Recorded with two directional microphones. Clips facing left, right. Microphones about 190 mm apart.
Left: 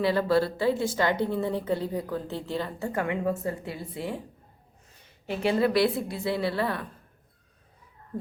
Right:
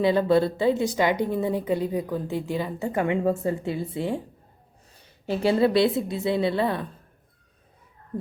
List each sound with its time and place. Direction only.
0.0 s a woman's voice: 20° right (ahead or behind)
5.2 s a woman's voice: 30° right (ahead or behind)
8.1 s speech: 20° right (ahead or behind)